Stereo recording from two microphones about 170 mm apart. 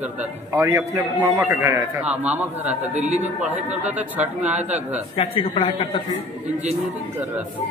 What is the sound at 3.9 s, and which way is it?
Speech, 10° right (ahead or behind).